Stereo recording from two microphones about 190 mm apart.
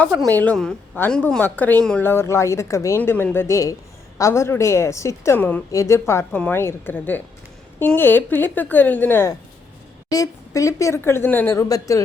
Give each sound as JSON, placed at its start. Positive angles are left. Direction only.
{"t": 0.3, "sound": "a woman's voice", "side_deg": 10}